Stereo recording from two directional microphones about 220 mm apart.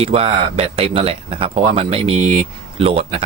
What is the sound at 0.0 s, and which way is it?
Speech, 25° right (ahead or behind).